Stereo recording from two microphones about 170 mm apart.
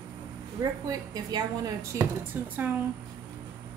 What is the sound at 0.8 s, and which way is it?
A woman's voice, 20° right (ahead or behind).